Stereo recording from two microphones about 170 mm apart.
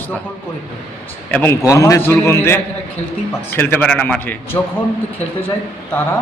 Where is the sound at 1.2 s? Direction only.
10° left (ahead or behind).